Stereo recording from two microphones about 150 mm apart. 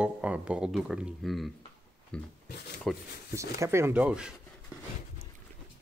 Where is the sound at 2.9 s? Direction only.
Centre (ahead or behind).